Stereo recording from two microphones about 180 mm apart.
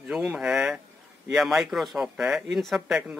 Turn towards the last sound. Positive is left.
turn(degrees=0)  # may be behind; listen again after turning